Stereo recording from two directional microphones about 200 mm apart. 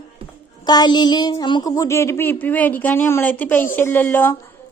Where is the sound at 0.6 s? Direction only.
20° left (ahead or behind).